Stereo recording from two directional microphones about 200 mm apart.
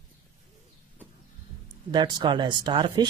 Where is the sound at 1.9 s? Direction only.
20° right (ahead or behind).